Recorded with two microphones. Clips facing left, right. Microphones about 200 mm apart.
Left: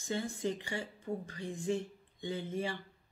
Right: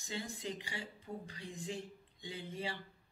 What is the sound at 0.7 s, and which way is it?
Speech, 50° left (ahead or behind).